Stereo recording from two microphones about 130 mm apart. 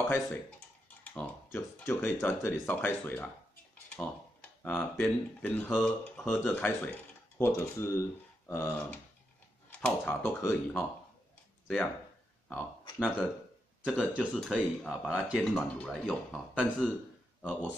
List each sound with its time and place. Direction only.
0.8 s speech: 10° left (ahead or behind)
11.6 s speech: 5° left (ahead or behind)